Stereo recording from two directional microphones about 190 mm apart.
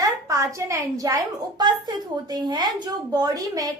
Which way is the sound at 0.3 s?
15° right (ahead or behind).